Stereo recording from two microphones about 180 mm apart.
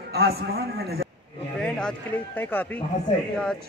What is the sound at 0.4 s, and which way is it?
Speech, 60° right (ahead or behind).